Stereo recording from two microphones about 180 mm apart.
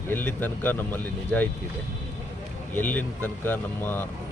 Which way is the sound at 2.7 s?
10° left (ahead or behind).